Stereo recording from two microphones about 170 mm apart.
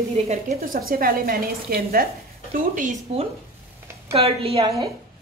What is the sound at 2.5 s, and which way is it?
Speech, 50° right (ahead or behind).